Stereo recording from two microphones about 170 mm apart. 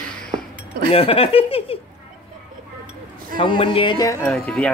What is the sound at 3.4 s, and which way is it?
Speech, 30° left (ahead or behind).